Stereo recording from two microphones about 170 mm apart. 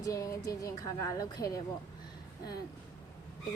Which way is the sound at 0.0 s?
20° left (ahead or behind).